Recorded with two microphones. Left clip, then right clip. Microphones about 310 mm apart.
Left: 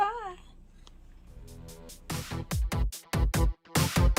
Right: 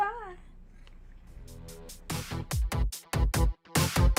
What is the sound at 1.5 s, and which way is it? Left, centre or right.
Music, centre.